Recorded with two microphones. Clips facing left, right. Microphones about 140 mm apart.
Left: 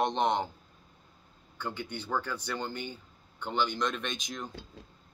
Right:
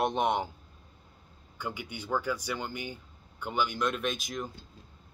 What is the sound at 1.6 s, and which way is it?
Speech, 10° right (ahead or behind).